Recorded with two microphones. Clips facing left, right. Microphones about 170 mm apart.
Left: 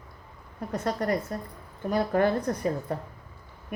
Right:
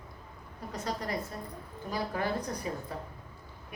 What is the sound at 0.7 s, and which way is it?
Speech, 55° left (ahead or behind).